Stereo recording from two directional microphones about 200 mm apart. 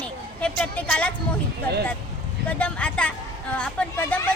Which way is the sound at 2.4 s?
5° left (ahead or behind).